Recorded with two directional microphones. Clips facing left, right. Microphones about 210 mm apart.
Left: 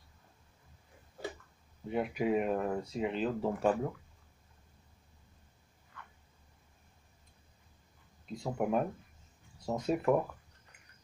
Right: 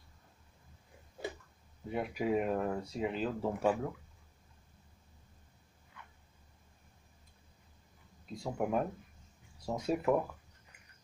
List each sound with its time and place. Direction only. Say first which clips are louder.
1.9 s speech: left 2 dB; centre (ahead or behind)
8.5 s speech: left 2 dB; 5° left (ahead or behind)